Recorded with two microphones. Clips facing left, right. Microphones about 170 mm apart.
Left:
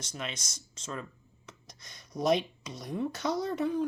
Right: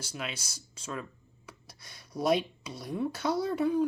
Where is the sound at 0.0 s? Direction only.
10° right (ahead or behind).